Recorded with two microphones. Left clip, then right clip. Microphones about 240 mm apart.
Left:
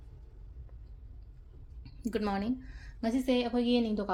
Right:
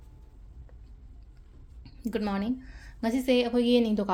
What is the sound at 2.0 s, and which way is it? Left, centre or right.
A woman's voice, centre.